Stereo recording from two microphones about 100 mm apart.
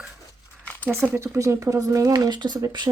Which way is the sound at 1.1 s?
30° right (ahead or behind).